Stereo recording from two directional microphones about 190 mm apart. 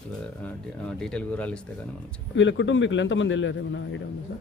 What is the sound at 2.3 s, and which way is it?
Speech, 80° left.